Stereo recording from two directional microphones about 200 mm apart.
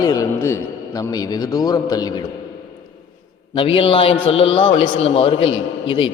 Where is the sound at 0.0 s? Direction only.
15° left (ahead or behind).